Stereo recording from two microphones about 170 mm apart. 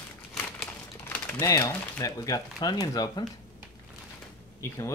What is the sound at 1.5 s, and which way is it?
Speech, 20° left (ahead or behind).